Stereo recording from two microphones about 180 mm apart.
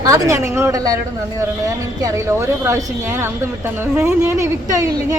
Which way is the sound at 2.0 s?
15° right (ahead or behind).